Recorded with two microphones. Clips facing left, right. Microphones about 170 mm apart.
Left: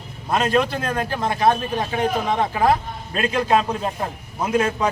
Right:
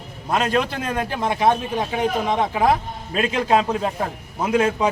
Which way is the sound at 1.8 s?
5° right (ahead or behind).